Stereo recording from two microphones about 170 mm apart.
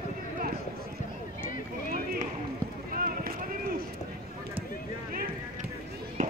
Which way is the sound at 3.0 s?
60° right (ahead or behind).